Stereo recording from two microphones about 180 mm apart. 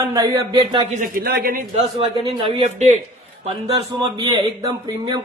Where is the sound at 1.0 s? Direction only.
55° right (ahead or behind).